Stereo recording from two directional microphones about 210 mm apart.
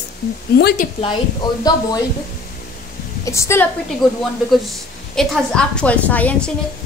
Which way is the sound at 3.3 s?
15° left (ahead or behind).